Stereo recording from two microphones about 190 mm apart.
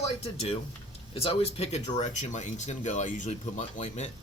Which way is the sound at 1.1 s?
30° left (ahead or behind).